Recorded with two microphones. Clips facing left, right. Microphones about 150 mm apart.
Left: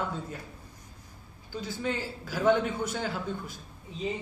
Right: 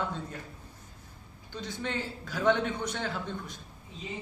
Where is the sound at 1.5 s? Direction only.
5° left (ahead or behind).